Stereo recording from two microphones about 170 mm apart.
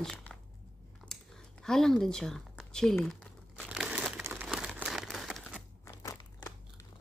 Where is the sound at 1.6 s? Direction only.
5° left (ahead or behind).